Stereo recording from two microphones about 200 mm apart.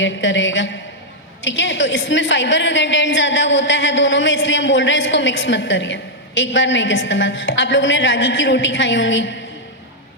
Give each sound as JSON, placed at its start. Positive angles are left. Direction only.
{"t": 0.0, "sound": "a woman's voice", "side_deg": 65}